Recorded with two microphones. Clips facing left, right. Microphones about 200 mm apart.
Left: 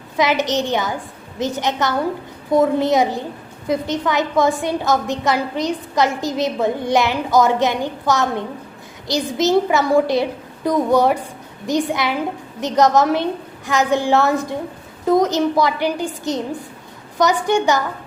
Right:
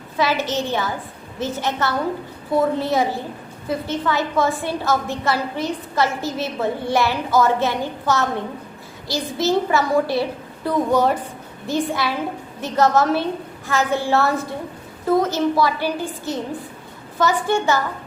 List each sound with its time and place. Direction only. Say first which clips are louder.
0.2 s a woman's voice: left 3 dB; 20° left (ahead or behind)